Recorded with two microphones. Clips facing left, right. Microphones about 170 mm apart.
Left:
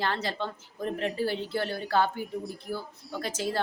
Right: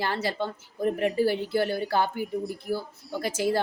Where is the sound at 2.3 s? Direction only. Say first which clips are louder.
Right 5 dB; centre (ahead or behind).